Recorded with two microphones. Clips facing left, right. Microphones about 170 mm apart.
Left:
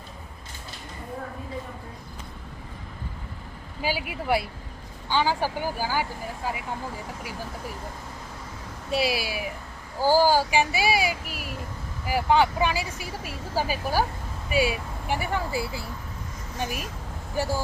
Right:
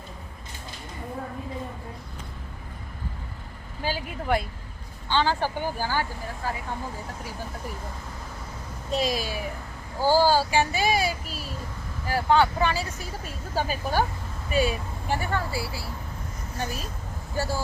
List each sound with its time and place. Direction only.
3.8 s speech: 10° left (ahead or behind)
8.9 s speech: 10° left (ahead or behind)